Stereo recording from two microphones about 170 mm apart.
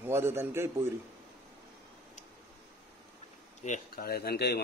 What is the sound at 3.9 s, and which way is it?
Speech, 65° left (ahead or behind).